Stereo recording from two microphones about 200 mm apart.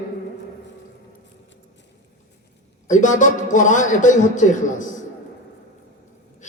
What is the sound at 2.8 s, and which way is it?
A man's voice, 40° left (ahead or behind).